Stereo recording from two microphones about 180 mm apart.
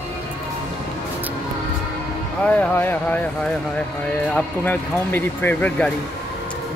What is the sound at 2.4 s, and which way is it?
Speech, 10° left (ahead or behind).